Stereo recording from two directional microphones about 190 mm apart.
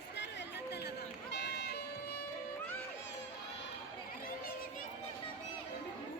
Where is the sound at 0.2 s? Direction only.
65° left (ahead or behind).